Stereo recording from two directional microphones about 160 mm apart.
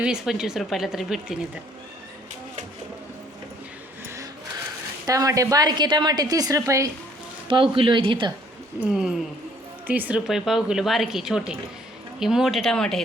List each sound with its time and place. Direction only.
0.0 s speech: 5° right (ahead or behind)
4.0 s a sound: 20° right (ahead or behind)
5.0 s a woman's voice: 20° right (ahead or behind)
7.4 s speech: 30° right (ahead or behind)
8.8 s speech: 5° right (ahead or behind)